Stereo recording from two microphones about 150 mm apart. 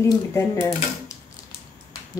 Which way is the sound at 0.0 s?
15° left (ahead or behind).